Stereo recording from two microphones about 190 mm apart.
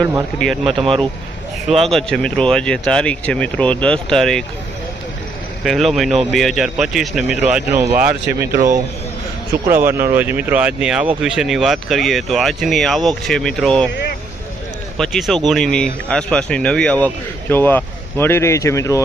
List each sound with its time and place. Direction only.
0.0 s speech: 15° right (ahead or behind)
0.6 s speech: 25° right (ahead or behind)
1.7 s speech: centre (ahead or behind)
5.6 s speech: centre (ahead or behind)
9.6 s speech: 10° right (ahead or behind)
14.9 s speech: centre (ahead or behind)